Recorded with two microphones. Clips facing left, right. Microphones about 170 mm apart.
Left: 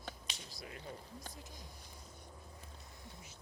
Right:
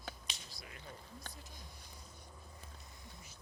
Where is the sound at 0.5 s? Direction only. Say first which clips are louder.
Left 4 dB; 35° left (ahead or behind).